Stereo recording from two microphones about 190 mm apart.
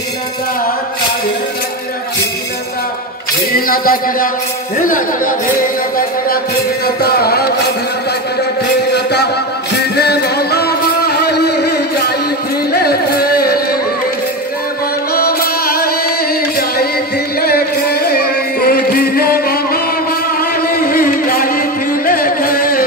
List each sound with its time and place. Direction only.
3.5 s a sound: 50° left (ahead or behind)
8.9 s a sound: 60° left (ahead or behind)
9.8 s music: 60° left (ahead or behind)
12.7 s carnatic music: 55° left (ahead or behind)
15.1 s music: 50° left (ahead or behind)
17.4 s music: 55° left (ahead or behind)